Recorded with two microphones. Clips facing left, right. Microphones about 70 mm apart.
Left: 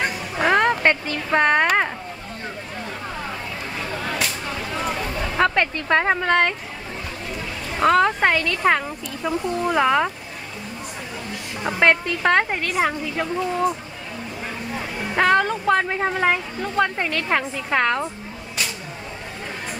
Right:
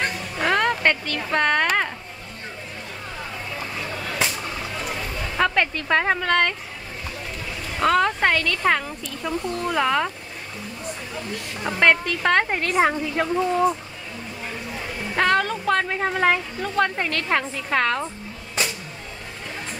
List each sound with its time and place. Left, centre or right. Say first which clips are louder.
0.0 s a sound: left 3 dB; centre
4.7 s a sound: left 4 dB; left
5.4 s speech: left 1 dB; centre
7.8 s speech: left 2 dB; centre
11.6 s speech: left 1 dB; centre
12.4 s speech: right 2 dB; centre
15.1 s speech: left 2 dB; centre